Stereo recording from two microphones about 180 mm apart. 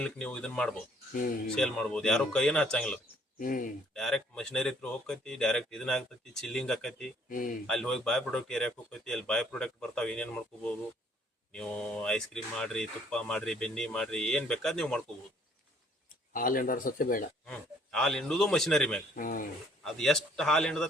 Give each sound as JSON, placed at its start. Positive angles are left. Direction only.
{"t": 0.0, "sound": "speech", "side_deg": 5}
{"t": 3.3, "sound": "speech", "side_deg": 50}
{"t": 3.9, "sound": "speech", "side_deg": 5}
{"t": 7.3, "sound": "speech", "side_deg": 50}
{"t": 7.7, "sound": "speech", "side_deg": 5}
{"t": 16.0, "sound": "speech", "side_deg": 50}
{"t": 17.4, "sound": "speech", "side_deg": 5}
{"t": 19.1, "sound": "speech", "side_deg": 50}
{"t": 19.8, "sound": "speech", "side_deg": 0}